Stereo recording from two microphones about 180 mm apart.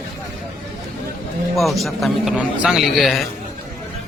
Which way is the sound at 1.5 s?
Centre (ahead or behind).